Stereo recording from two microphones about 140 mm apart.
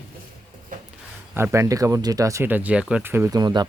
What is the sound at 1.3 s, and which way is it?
Speech, 15° right (ahead or behind).